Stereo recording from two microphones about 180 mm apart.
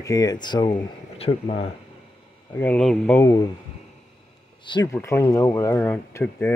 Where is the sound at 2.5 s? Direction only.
10° left (ahead or behind).